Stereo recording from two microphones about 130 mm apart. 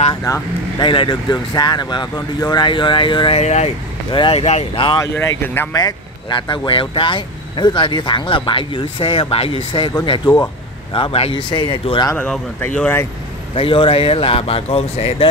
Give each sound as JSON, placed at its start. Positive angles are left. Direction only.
{"t": 0.1, "sound": "speech", "side_deg": 30}
{"t": 0.8, "sound": "speech", "side_deg": 40}
{"t": 3.3, "sound": "speech", "side_deg": 55}
{"t": 4.1, "sound": "speech", "side_deg": 40}
{"t": 5.0, "sound": "speech", "side_deg": 20}
{"t": 5.8, "sound": "speech", "side_deg": 35}
{"t": 12.2, "sound": "speech", "side_deg": 10}
{"t": 13.6, "sound": "speech", "side_deg": 40}